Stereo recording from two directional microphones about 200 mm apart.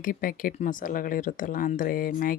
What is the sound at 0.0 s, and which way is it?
Speech, 45° left (ahead or behind).